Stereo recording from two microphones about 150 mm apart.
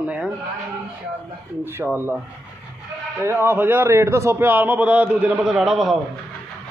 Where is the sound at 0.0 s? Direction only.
10° right (ahead or behind).